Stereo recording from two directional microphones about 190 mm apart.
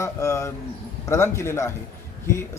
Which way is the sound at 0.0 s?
15° left (ahead or behind).